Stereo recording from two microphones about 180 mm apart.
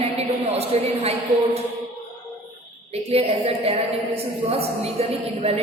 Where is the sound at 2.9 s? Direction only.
35° right (ahead or behind).